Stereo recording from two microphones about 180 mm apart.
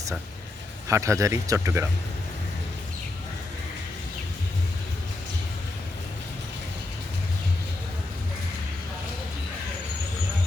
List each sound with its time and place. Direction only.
0.9 s speech: 15° right (ahead or behind)